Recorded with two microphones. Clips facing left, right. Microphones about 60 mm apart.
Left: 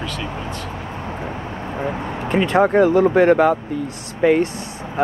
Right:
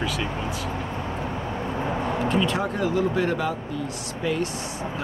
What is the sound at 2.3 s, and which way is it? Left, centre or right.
Speech, left.